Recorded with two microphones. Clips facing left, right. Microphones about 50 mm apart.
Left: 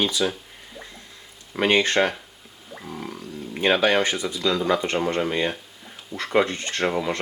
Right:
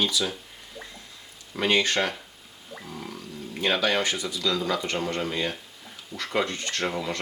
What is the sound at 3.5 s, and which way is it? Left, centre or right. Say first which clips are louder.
Speech: left 5 dB; left.